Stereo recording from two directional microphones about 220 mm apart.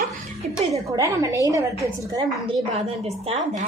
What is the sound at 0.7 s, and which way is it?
A woman's voice, 15° right (ahead or behind).